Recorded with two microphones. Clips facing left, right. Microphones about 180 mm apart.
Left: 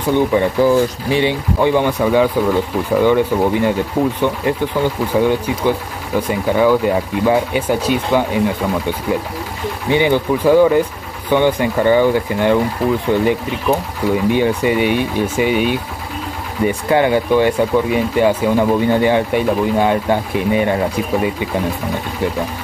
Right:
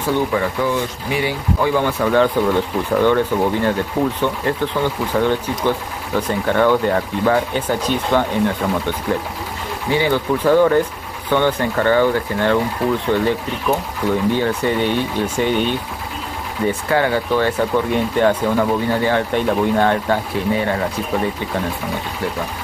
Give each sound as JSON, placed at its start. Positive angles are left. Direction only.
{"t": 0.1, "sound": "speech", "side_deg": 20}
{"t": 0.6, "sound": "speech", "side_deg": 35}
{"t": 1.2, "sound": "speech", "side_deg": 20}